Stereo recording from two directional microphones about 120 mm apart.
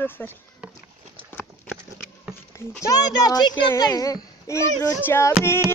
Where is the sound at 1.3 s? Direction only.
15° left (ahead or behind).